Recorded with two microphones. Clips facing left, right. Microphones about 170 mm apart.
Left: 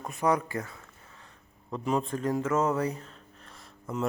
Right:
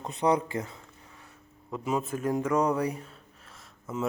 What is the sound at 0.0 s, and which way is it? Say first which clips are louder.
Speech: right 1 dB; 20° right (ahead or behind).